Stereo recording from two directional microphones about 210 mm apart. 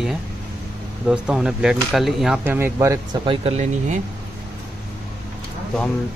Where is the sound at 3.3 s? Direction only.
30° right (ahead or behind).